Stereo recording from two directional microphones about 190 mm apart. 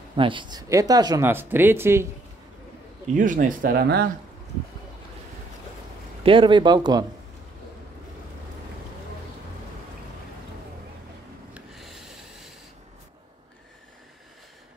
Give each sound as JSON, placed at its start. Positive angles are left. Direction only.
{"t": 0.1, "sound": "speech", "side_deg": -25}
{"t": 3.2, "sound": "speech", "side_deg": -45}
{"t": 6.2, "sound": "speech", "side_deg": -25}
{"t": 11.5, "sound": "rub", "side_deg": 0}